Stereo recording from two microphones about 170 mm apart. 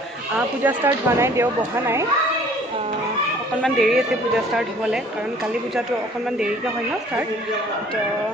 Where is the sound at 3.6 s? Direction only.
Centre (ahead or behind).